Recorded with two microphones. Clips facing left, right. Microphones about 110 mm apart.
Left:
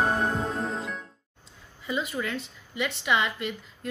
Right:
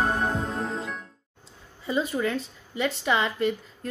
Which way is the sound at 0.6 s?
Centre (ahead or behind).